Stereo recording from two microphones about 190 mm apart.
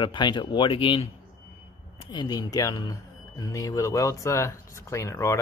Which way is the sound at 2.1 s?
20° left (ahead or behind).